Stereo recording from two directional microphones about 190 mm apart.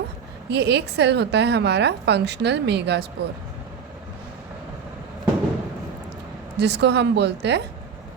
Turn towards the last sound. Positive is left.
turn(degrees=-65)  # may be behind; listen again after turning